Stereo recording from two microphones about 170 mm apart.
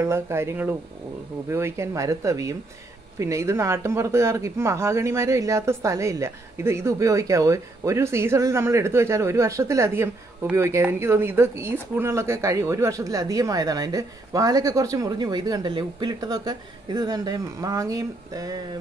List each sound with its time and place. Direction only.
0.0 s speech: 15° right (ahead or behind)